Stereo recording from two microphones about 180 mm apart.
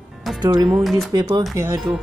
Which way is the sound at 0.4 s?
20° right (ahead or behind).